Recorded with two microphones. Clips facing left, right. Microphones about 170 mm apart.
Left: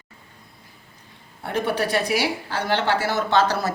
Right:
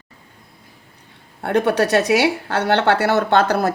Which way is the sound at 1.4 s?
70° right (ahead or behind).